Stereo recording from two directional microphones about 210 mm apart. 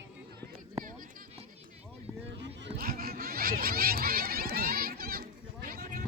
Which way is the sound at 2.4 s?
55° right (ahead or behind).